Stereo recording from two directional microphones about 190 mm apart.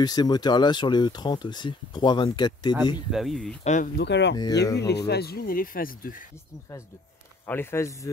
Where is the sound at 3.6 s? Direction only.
40° left (ahead or behind).